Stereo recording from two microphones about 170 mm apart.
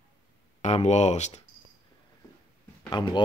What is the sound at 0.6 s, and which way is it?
Speech, 40° left (ahead or behind).